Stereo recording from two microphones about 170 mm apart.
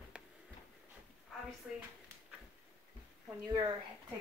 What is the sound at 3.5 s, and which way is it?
Speech, 30° right (ahead or behind).